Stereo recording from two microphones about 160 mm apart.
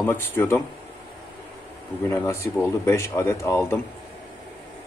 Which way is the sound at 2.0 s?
15° left (ahead or behind).